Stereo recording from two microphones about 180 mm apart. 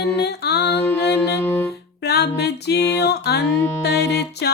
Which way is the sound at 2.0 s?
65° left (ahead or behind).